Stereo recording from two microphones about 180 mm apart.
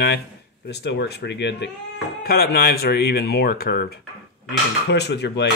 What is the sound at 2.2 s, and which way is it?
Speech, 60° left (ahead or behind).